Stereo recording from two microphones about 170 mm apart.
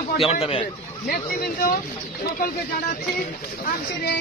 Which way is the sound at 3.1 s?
65° left (ahead or behind).